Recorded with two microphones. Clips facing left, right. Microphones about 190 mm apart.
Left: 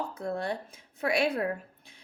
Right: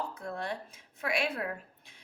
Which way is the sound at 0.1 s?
35° left (ahead or behind).